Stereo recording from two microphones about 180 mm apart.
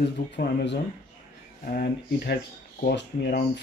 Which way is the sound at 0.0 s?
70° left (ahead or behind).